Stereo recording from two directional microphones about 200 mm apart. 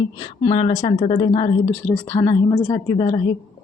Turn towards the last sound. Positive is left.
turn(degrees=20)  # may be behind; listen again after turning